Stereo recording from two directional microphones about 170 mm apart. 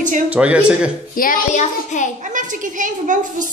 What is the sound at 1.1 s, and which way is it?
Speech, 55° left (ahead or behind).